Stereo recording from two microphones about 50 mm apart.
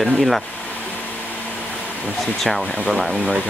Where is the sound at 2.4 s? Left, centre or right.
Centre.